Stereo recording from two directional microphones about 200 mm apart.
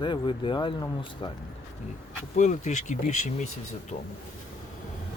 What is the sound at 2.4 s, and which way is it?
Speech, 35° left (ahead or behind).